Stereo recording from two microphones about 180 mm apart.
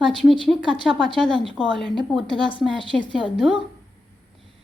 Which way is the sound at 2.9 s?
5° left (ahead or behind).